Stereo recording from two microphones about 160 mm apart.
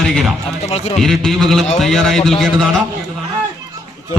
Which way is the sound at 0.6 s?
45° left (ahead or behind).